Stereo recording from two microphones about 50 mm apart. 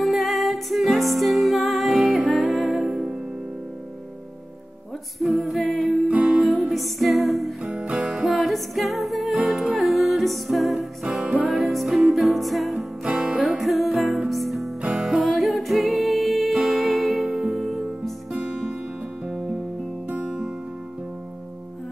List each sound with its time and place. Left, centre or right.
0.0 s music: centre
5.2 s a capella: centre
6.0 s music: right
6.4 s music: centre
7.6 s music: centre
8.3 s music: centre
14.8 s music: centre
15.2 s music: centre
19.2 s music: centre